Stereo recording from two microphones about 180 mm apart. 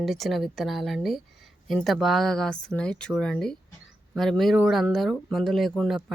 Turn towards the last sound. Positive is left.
turn(degrees=0)  # may be behind; listen again after turning